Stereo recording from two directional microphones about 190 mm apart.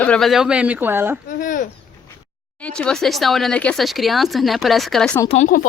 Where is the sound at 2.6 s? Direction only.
5° left (ahead or behind).